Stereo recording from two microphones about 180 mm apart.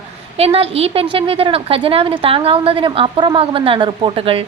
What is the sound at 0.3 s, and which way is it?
A woman's voice, 35° right (ahead or behind).